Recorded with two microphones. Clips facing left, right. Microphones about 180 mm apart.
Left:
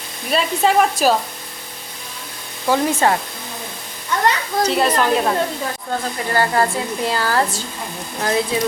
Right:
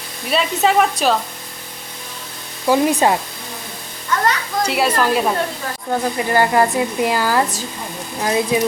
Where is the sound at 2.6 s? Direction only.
15° right (ahead or behind).